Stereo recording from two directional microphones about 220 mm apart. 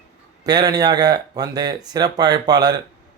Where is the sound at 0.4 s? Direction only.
20° right (ahead or behind).